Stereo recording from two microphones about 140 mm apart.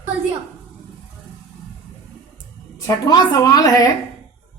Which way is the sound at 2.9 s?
30° left (ahead or behind).